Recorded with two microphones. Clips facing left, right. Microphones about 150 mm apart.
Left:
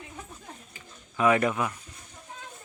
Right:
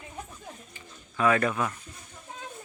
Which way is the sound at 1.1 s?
20° left (ahead or behind).